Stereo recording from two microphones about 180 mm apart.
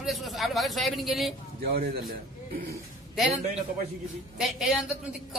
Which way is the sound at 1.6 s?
55° right (ahead or behind).